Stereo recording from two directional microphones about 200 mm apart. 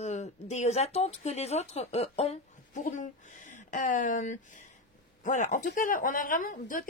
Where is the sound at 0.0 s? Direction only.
35° left (ahead or behind).